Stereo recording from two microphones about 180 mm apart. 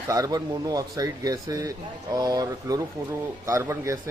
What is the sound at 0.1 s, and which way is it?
A man's voice, 20° right (ahead or behind).